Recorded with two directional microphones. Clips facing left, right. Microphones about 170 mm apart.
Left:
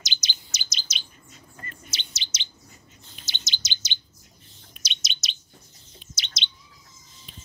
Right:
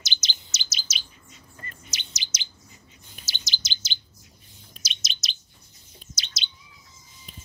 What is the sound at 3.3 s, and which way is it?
Chirp, 20° left (ahead or behind).